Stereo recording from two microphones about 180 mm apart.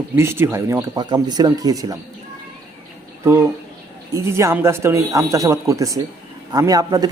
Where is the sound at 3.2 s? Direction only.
10° right (ahead or behind).